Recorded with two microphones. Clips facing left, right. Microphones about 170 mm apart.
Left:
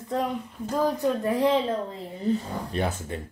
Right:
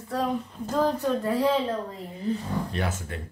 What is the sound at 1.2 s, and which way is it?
Speech, 20° left (ahead or behind).